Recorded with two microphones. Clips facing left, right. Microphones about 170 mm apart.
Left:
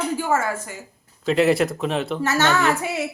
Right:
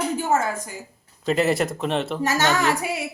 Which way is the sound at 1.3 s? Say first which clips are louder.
Left 3 dB; centre (ahead or behind).